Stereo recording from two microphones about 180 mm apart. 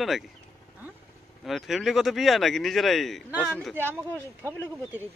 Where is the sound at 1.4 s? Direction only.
Centre (ahead or behind).